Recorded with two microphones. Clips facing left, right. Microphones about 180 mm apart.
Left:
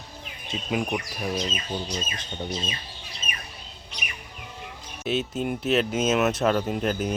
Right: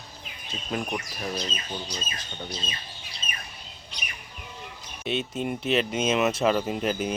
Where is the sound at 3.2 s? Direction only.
5° left (ahead or behind).